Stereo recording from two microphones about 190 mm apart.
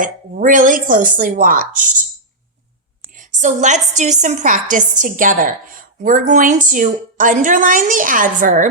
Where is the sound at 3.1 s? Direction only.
40° right (ahead or behind).